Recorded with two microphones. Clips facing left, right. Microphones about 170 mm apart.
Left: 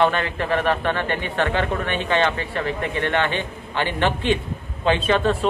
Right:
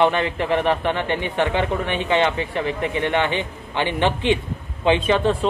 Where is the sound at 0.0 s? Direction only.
15° right (ahead or behind).